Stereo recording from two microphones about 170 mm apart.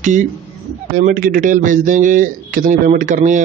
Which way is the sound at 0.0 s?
45° right (ahead or behind).